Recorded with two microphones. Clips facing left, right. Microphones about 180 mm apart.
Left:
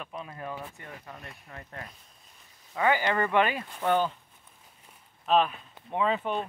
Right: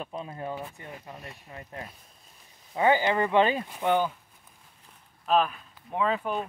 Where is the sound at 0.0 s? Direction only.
30° right (ahead or behind).